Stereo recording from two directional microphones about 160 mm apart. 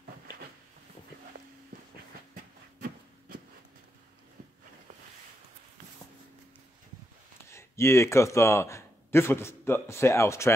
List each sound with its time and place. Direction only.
7.4 s speech: 15° left (ahead or behind)